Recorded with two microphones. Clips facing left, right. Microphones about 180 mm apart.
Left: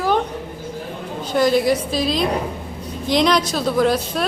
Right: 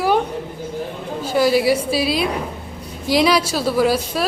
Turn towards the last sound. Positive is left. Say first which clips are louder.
# even
turn(degrees=-5)  # may be behind; listen again after turning